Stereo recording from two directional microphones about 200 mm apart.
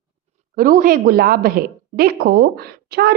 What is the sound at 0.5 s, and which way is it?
A woman's voice, 45° right (ahead or behind).